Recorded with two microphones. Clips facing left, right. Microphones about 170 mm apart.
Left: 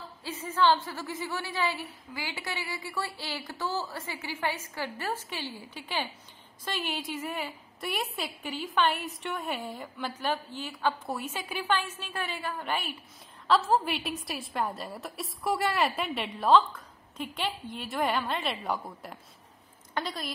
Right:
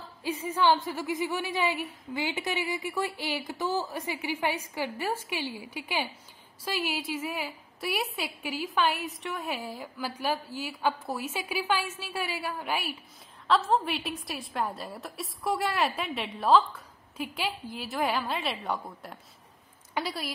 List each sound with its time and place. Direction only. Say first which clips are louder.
0.2 s a woman's voice: even; 15° right (ahead or behind)